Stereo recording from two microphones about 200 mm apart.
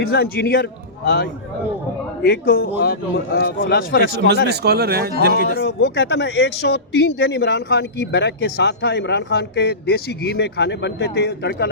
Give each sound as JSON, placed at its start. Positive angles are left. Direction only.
{"t": 0.1, "sound": "a man's voice", "side_deg": 55}
{"t": 2.2, "sound": "a man's voice", "side_deg": 50}
{"t": 4.4, "sound": "speech", "side_deg": -55}
{"t": 5.5, "sound": "a man's voice", "side_deg": 55}